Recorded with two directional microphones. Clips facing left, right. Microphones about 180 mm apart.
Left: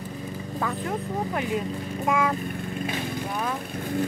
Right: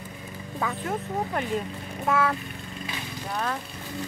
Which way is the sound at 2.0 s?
10° left (ahead or behind).